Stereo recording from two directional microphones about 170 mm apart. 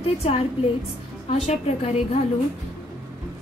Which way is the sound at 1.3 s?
40° left (ahead or behind).